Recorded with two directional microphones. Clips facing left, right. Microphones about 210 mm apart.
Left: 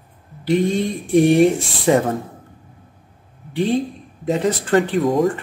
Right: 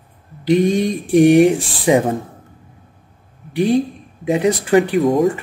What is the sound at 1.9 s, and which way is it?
Mantra, 15° right (ahead or behind).